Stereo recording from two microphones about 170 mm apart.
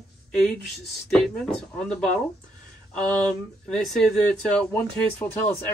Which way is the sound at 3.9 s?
Centre (ahead or behind).